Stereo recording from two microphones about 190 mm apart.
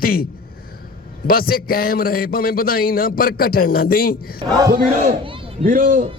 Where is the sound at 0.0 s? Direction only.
50° left (ahead or behind).